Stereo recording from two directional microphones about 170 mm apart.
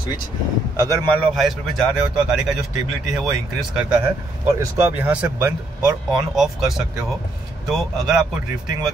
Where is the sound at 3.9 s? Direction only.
15° right (ahead or behind).